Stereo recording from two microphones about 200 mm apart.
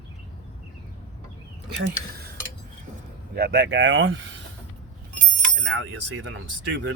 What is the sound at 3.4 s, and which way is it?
Speech, 55° right (ahead or behind).